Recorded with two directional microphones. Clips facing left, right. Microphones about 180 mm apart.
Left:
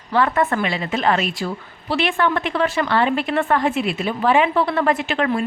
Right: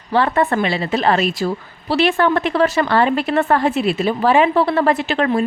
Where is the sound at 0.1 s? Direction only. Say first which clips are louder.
Right 2 dB; 30° right (ahead or behind).